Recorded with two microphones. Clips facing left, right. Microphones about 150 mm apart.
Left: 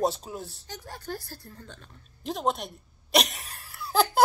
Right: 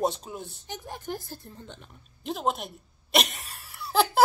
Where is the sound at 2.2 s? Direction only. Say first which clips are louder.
Even; centre (ahead or behind).